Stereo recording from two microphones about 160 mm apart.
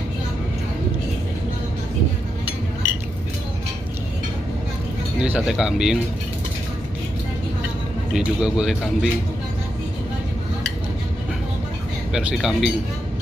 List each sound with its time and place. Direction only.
5.2 s speech: 5° right (ahead or behind)
8.1 s speech: 5° right (ahead or behind)
12.1 s speech: 5° right (ahead or behind)